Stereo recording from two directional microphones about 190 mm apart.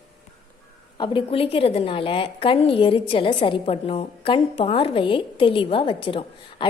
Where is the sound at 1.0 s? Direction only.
25° left (ahead or behind).